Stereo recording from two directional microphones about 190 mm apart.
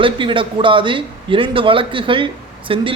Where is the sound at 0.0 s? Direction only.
25° right (ahead or behind).